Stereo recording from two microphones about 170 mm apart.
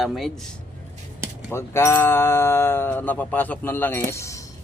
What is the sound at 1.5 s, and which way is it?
Speech, 15° left (ahead or behind).